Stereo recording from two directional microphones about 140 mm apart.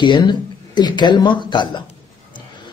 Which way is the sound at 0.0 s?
35° left (ahead or behind).